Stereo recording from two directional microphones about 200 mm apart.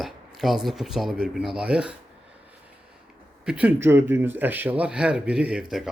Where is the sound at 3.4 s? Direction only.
5° right (ahead or behind).